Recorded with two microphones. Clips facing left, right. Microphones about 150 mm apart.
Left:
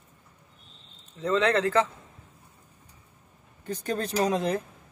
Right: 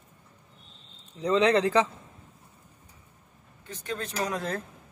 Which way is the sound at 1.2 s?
15° right (ahead or behind).